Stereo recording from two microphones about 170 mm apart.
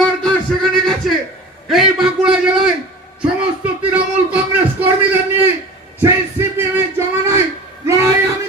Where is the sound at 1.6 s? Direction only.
Centre (ahead or behind).